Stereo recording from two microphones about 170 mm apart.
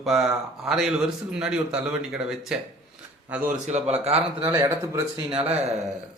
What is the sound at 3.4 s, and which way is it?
Speech, 40° right (ahead or behind).